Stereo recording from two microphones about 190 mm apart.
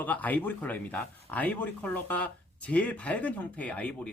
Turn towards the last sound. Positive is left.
turn(degrees=5)  # may be behind; listen again after turning